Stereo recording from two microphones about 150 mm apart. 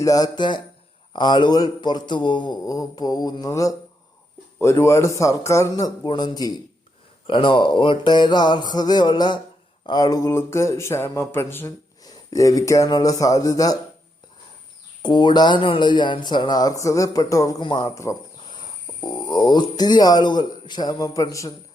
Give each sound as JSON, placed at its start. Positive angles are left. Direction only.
{"t": 0.0, "sound": "speech", "side_deg": 25}
{"t": 15.0, "sound": "speech", "side_deg": 30}